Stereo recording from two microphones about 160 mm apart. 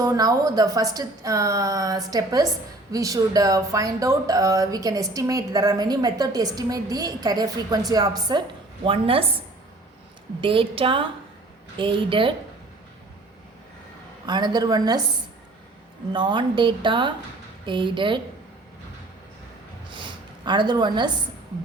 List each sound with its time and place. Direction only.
0.0 s speech: 25° right (ahead or behind)
10.4 s a woman's voice: 35° right (ahead or behind)
14.3 s speech: 25° right (ahead or behind)
16.1 s a woman's voice: 30° right (ahead or behind)
19.9 s a sound: 30° right (ahead or behind)